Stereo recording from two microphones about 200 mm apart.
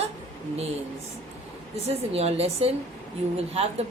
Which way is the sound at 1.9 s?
30° right (ahead or behind).